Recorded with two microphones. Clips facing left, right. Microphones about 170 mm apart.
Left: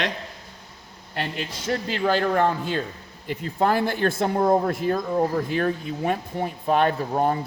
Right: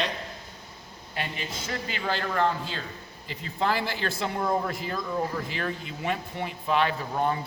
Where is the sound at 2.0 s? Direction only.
45° left (ahead or behind).